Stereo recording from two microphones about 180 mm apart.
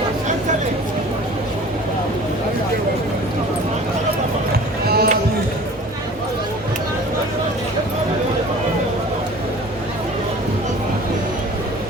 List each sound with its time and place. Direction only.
4.9 s basketball bounce: 60° right (ahead or behind)